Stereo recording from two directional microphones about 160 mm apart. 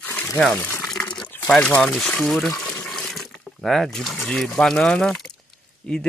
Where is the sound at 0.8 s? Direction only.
5° left (ahead or behind).